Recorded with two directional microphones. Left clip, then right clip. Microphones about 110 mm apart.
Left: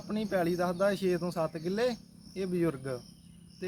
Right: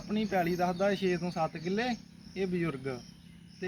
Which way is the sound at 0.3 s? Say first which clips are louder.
Even; 40° left (ahead or behind).